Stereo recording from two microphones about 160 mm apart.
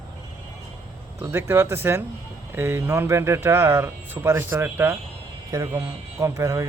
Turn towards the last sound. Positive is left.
turn(degrees=-20)  # may be behind; listen again after turning